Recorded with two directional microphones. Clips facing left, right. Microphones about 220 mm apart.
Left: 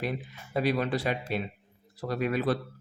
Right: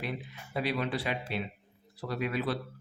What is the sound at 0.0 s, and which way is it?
Speech, 45° left (ahead or behind).